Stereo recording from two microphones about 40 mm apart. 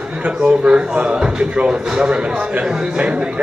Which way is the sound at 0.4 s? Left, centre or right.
Right.